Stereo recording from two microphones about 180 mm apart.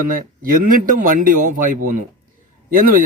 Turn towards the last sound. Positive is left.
turn(degrees=-50)  # may be behind; listen again after turning